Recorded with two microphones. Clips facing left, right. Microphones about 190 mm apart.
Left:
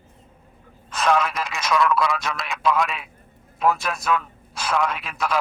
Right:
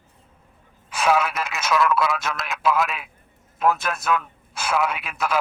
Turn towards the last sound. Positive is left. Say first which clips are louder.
# even
turn(degrees=-5)  # may be behind; listen again after turning